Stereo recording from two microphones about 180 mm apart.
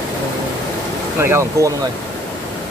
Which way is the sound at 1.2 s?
15° right (ahead or behind).